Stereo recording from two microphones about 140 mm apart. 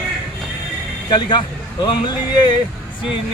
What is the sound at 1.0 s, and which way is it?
Speech, 30° left (ahead or behind).